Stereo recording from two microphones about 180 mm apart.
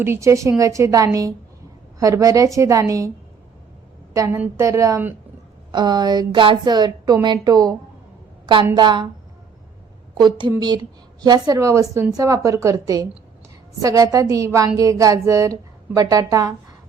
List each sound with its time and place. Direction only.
0.0 s a woman's voice: 15° right (ahead or behind)
4.1 s a woman's voice: 15° right (ahead or behind)
10.2 s a woman's voice: 25° right (ahead or behind)